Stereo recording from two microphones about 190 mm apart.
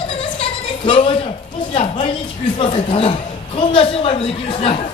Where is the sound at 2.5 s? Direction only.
30° left (ahead or behind).